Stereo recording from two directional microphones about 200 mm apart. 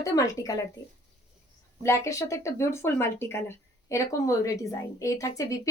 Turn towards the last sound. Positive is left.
turn(degrees=15)  # may be behind; listen again after turning